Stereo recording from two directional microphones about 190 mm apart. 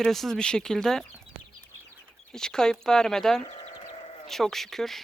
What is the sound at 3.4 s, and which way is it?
Sheep, 35° left (ahead or behind).